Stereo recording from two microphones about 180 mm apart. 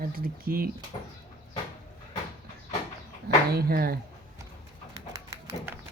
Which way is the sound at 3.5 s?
55° right (ahead or behind).